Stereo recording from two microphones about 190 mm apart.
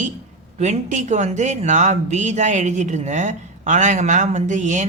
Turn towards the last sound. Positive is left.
turn(degrees=-40)  # may be behind; listen again after turning